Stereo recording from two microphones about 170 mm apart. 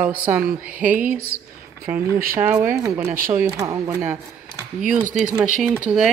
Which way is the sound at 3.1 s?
55° right (ahead or behind).